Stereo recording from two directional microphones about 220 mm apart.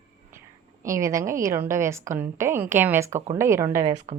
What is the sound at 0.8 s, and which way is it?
A woman's voice, 15° right (ahead or behind).